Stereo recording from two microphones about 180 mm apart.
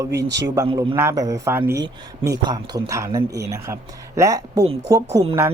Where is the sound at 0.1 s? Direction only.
70° right (ahead or behind).